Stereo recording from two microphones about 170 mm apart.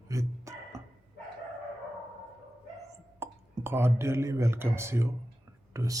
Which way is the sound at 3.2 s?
15° right (ahead or behind).